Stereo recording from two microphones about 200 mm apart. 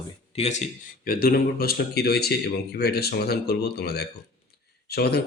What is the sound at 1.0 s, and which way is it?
Speech, 45° left (ahead or behind).